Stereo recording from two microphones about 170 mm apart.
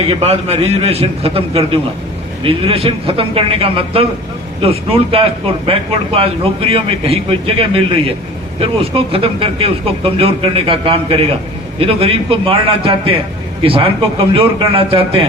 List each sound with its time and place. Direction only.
0.1 s speech: 35° right (ahead or behind)